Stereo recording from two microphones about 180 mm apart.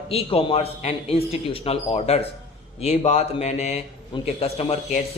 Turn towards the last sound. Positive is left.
turn(degrees=35)  # may be behind; listen again after turning